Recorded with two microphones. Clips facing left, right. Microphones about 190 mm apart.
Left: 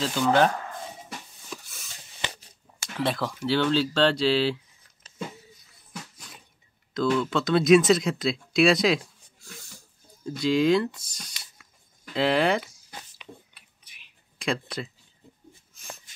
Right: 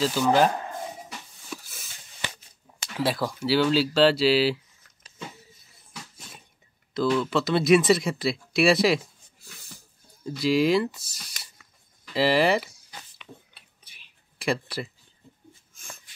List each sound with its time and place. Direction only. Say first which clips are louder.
0.0 s speech: right 1 dB; 5° right (ahead or behind)
0.5 s a sound: right 2 dB; 25° right (ahead or behind)
1.5 s a sound: right 2 dB; 5° right (ahead or behind)
3.0 s speech: right 1 dB; 5° right (ahead or behind)
6.9 s speech: right 1 dB; 5° right (ahead or behind)
10.2 s speech: even; 5° right (ahead or behind)
13.6 s dishes: right 2 dB; 30° right (ahead or behind)
14.4 s speech: right 2 dB; 5° right (ahead or behind)